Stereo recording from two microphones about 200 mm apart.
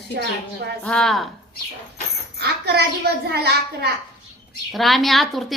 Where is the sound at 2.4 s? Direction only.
55° right (ahead or behind).